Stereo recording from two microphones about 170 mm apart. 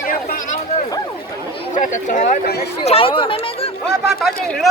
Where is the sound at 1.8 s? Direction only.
50° left (ahead or behind).